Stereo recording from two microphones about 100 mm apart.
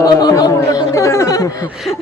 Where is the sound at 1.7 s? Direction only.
5° right (ahead or behind).